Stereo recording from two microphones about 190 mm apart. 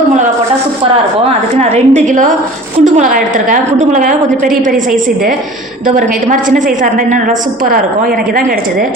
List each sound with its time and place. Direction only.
1.7 s a woman's voice: 40° right (ahead or behind)
6.0 s a woman's voice: 45° right (ahead or behind)